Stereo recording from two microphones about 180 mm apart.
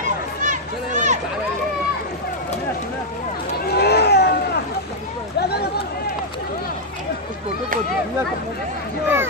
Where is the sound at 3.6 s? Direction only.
65° left (ahead or behind).